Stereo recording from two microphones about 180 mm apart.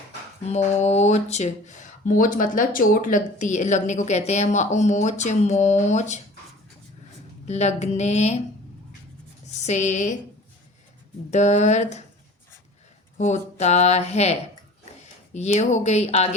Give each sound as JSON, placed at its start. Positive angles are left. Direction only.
{"t": 0.4, "sound": "speech", "side_deg": 40}
{"t": 7.4, "sound": "speech", "side_deg": 40}
{"t": 9.6, "sound": "speech", "side_deg": 40}
{"t": 11.3, "sound": "speech", "side_deg": 40}
{"t": 13.1, "sound": "speech", "side_deg": 40}